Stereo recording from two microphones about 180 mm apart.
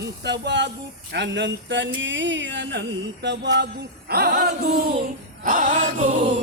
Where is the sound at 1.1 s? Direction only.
75° right (ahead or behind).